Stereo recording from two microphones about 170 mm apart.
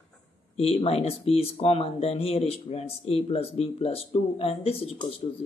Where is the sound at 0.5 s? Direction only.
35° left (ahead or behind).